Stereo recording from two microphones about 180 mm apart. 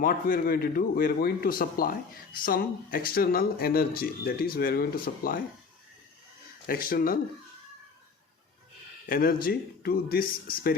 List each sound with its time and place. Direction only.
0.0 s a man's voice: 55° left (ahead or behind)
6.7 s speech: 55° left (ahead or behind)
9.0 s a man's voice: 55° left (ahead or behind)